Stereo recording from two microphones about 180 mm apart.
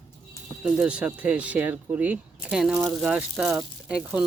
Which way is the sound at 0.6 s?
5° right (ahead or behind).